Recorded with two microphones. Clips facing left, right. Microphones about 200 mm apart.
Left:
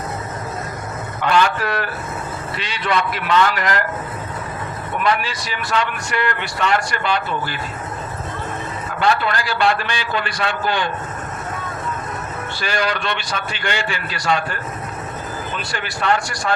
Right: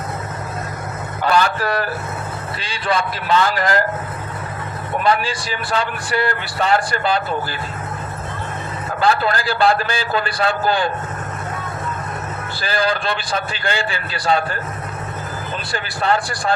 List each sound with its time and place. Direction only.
1.2 s a man's voice: 35° right (ahead or behind)
4.9 s a man's voice: 30° right (ahead or behind)
9.0 s a man's voice: 35° right (ahead or behind)
12.5 s a man's voice: 35° right (ahead or behind)
15.7 s a man's voice: 35° right (ahead or behind)